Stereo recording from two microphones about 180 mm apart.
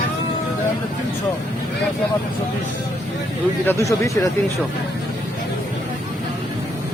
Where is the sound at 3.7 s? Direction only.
15° left (ahead or behind).